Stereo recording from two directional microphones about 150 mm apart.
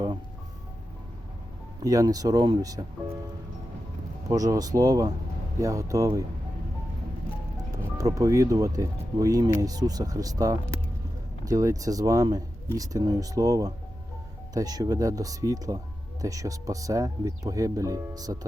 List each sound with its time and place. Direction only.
1.8 s speech: 25° right (ahead or behind)
4.3 s speech: 25° right (ahead or behind)
7.5 s speech: 20° right (ahead or behind)